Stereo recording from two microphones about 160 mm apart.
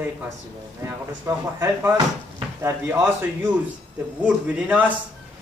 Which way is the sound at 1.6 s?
20° right (ahead or behind).